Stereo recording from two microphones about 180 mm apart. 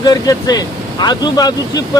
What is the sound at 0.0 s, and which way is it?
Speech, 20° left (ahead or behind).